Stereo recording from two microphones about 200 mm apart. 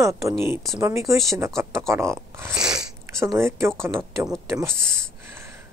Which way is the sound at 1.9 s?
15° right (ahead or behind).